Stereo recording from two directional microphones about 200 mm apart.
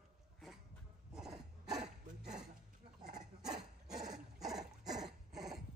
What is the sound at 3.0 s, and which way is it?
Dog, 40° right (ahead or behind).